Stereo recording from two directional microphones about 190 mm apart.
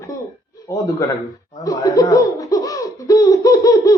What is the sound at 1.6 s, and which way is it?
Laughter, 20° left (ahead or behind).